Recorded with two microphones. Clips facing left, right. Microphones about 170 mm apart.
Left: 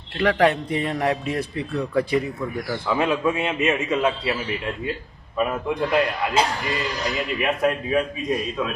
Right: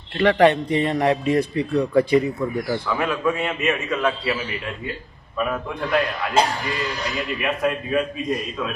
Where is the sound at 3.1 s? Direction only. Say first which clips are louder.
Left 1 dB; 20° left (ahead or behind).